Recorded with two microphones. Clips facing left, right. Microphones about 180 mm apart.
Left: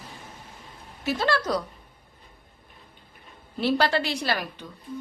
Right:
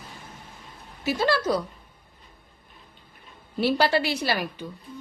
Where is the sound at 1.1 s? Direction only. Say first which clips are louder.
Right 2 dB; centre (ahead or behind).